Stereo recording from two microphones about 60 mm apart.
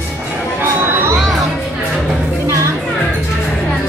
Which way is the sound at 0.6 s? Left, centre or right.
Right.